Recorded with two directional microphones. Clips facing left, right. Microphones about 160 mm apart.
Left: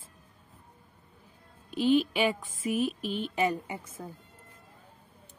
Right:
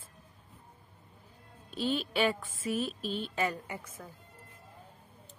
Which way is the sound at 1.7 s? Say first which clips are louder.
Left 8 dB; 15° left (ahead or behind).